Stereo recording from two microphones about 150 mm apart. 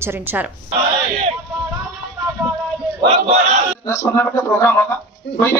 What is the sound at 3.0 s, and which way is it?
Battle cry, 45° right (ahead or behind).